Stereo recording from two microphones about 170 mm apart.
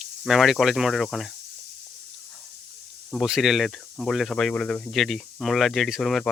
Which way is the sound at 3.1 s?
Centre (ahead or behind).